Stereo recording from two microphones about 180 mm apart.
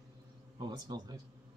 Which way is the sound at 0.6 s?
25° right (ahead or behind).